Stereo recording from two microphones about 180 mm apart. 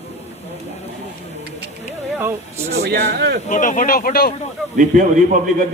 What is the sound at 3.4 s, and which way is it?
Speech, 45° left (ahead or behind).